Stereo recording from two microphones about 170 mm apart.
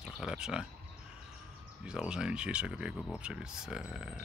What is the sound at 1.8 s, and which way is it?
Speech, 5° right (ahead or behind).